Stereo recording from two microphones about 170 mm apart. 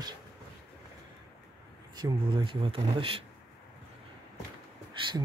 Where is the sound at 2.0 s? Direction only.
30° right (ahead or behind).